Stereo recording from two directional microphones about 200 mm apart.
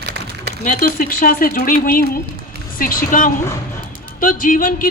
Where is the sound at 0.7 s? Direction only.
40° left (ahead or behind).